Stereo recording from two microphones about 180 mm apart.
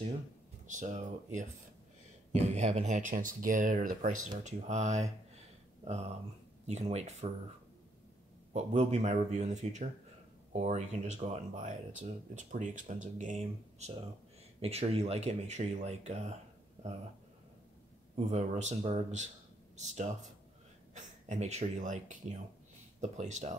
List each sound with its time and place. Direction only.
0.7 s speech: 45° right (ahead or behind)
8.7 s speech: 40° right (ahead or behind)
18.1 s speech: 40° right (ahead or behind)
20.9 s speech: 40° right (ahead or behind)